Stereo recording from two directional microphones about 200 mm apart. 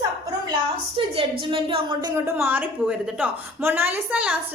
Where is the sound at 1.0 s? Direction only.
25° right (ahead or behind).